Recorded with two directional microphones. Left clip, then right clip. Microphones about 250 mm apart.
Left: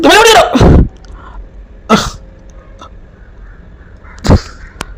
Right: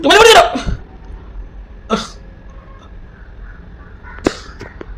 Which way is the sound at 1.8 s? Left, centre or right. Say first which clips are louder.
Left 9 dB; left.